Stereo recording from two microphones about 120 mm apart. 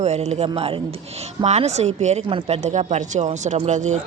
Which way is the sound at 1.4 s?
65° right (ahead or behind).